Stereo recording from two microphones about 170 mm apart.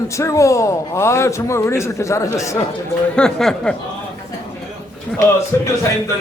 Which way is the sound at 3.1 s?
5° left (ahead or behind).